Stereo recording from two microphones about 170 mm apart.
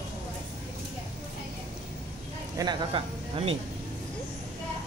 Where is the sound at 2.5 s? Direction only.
25° right (ahead or behind).